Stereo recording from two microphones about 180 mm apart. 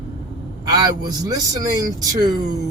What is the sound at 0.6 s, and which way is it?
Speech, 20° right (ahead or behind).